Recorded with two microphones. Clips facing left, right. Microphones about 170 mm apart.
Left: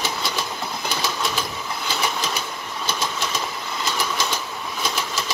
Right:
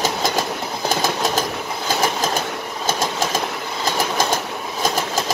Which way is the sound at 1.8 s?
45° right (ahead or behind).